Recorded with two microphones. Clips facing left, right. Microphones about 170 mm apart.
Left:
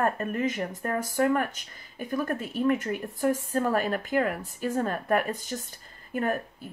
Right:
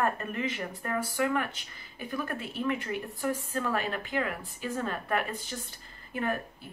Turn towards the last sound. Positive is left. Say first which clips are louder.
# left 4 dB
turn(degrees=45)  # may be behind; listen again after turning